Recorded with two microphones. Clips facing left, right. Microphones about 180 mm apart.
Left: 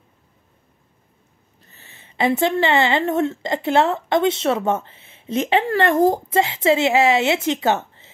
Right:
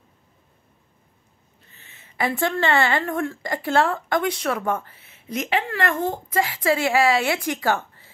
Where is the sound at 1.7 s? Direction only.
35° left (ahead or behind).